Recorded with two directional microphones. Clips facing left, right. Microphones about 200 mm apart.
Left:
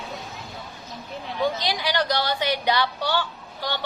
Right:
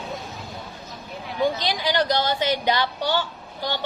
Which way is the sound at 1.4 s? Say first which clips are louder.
Right 2 dB; 20° right (ahead or behind).